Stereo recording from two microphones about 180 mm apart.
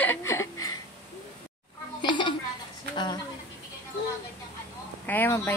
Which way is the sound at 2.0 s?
25° left (ahead or behind).